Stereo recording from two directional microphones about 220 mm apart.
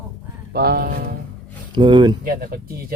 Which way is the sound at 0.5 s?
45° right (ahead or behind).